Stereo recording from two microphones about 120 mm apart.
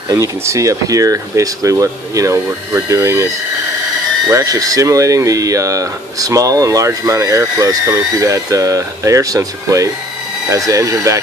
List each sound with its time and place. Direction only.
0.1 s speech: 25° right (ahead or behind)
4.3 s speech: 25° right (ahead or behind)